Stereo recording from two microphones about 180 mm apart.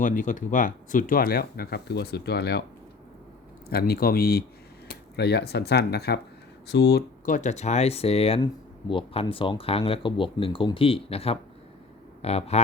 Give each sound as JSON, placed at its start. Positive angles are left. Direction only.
{"t": 0.0, "sound": "speech", "side_deg": 45}
{"t": 3.7, "sound": "speech", "side_deg": 60}